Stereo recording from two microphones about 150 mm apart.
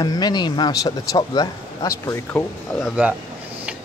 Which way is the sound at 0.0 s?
25° left (ahead or behind).